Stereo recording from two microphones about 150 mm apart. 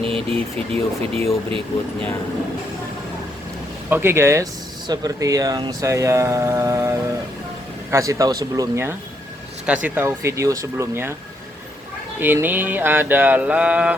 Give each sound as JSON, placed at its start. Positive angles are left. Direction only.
{"t": 0.1, "sound": "speech", "side_deg": -40}
{"t": 3.8, "sound": "mantra", "side_deg": -15}
{"t": 4.9, "sound": "speech", "side_deg": -25}
{"t": 9.6, "sound": "mantra", "side_deg": -10}
{"t": 12.2, "sound": "mantra", "side_deg": -15}